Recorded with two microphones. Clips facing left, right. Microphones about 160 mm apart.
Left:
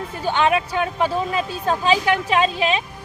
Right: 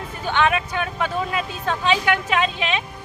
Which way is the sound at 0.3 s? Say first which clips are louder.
Left 2 dB; 35° left (ahead or behind).